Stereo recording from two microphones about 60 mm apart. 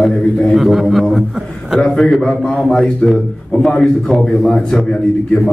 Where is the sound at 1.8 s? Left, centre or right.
Centre.